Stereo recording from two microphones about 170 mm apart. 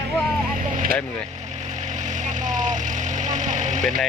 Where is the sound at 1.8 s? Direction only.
45° right (ahead or behind).